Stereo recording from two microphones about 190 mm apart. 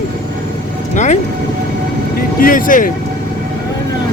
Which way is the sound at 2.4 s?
45° left (ahead or behind).